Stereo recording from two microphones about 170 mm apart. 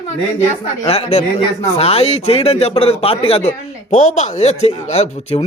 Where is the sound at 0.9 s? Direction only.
40° left (ahead or behind).